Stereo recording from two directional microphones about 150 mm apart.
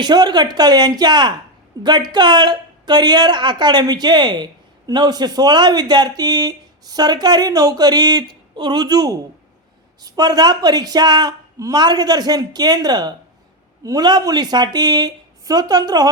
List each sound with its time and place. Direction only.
0.0 s speech: 30° right (ahead or behind)